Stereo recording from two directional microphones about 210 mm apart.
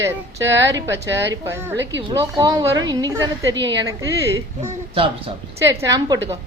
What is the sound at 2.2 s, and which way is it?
Speech, 15° right (ahead or behind).